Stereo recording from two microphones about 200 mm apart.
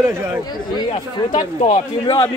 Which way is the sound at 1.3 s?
30° left (ahead or behind).